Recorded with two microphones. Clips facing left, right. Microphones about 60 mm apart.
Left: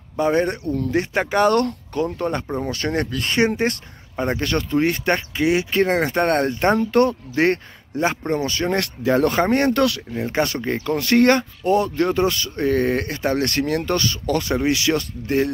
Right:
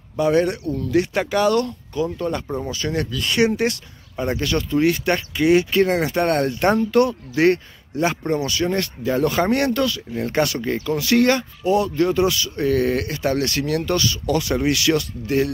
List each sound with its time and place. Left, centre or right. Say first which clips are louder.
0.2 s speech: right 1 dB; left
2.1 s speech: left 1 dB; left
2.4 s speech: left 1 dB; left
2.7 s speech: left 2 dB; left
5.4 s speech: right 5 dB; centre
5.7 s speech: even; left
8.7 s speech: left 2 dB; left
9.3 s speech: left 1 dB; left
9.8 s speech: left 3 dB; left
10.1 s speech: right 1 dB; centre
10.4 s speech: even; left
10.9 s speech: left 2 dB; left
14.5 s speech: even; left